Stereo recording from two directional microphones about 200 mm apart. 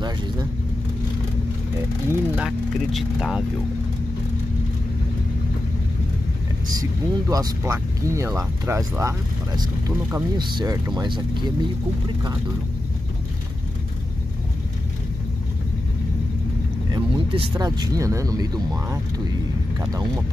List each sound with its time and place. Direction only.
2.0 s speech: 5° right (ahead or behind)
6.7 s speech: 20° right (ahead or behind)
16.9 s speech: 20° right (ahead or behind)